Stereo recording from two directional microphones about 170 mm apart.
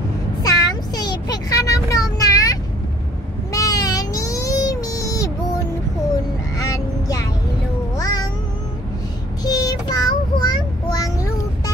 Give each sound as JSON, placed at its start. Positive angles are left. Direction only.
{"t": 0.4, "sound": "child singing", "side_deg": 20}
{"t": 3.5, "sound": "a sound", "side_deg": 20}
{"t": 6.6, "sound": "vehicle", "side_deg": 20}
{"t": 8.0, "sound": "cat", "side_deg": 20}
{"t": 9.4, "sound": "child singing", "side_deg": 20}